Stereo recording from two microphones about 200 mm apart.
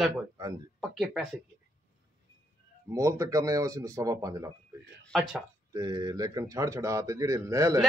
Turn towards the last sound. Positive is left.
turn(degrees=-15)  # may be behind; listen again after turning